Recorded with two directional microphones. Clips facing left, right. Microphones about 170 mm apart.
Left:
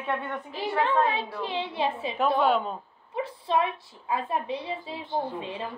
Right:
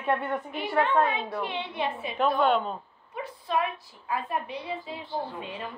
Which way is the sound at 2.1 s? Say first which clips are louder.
Even; 5° left (ahead or behind).